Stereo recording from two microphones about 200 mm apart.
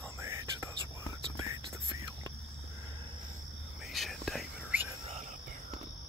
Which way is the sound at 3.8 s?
Centre (ahead or behind).